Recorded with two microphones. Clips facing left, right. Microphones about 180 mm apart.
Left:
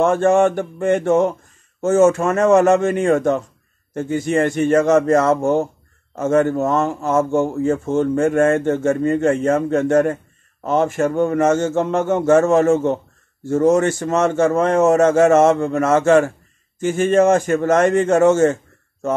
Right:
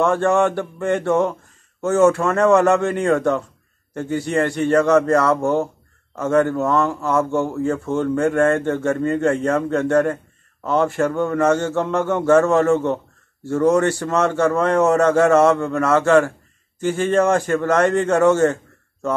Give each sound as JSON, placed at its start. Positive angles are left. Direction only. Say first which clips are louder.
{"t": 0.0, "sound": "speech", "louder": "left 3 dB", "side_deg": 20}
{"t": 1.8, "sound": "speech", "louder": "left 2 dB", "side_deg": 45}
{"t": 2.0, "sound": "speech", "louder": "left 1 dB", "side_deg": 20}